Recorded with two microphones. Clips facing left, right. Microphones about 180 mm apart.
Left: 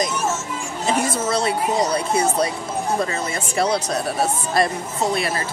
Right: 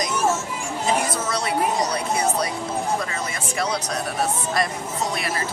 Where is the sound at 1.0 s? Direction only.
25° left (ahead or behind).